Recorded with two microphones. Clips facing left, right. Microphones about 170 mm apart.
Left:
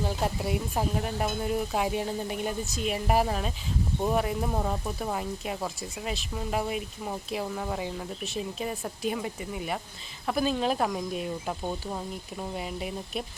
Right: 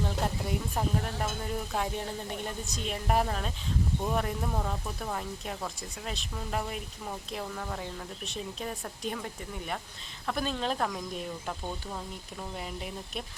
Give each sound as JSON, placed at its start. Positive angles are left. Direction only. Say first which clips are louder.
{"t": 0.0, "sound": "speech", "louder": "left 3 dB", "side_deg": 5}
{"t": 12.5, "sound": "speech", "louder": "left 4 dB", "side_deg": 5}